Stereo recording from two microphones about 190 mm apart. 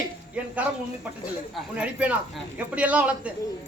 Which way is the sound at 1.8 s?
5° right (ahead or behind).